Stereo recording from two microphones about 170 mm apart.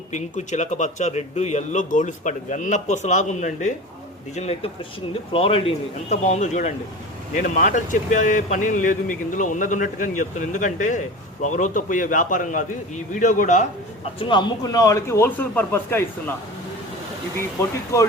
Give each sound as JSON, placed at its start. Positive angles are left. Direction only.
{"t": 0.1, "sound": "a man's voice", "side_deg": 45}
{"t": 14.2, "sound": "a man's voice", "side_deg": 30}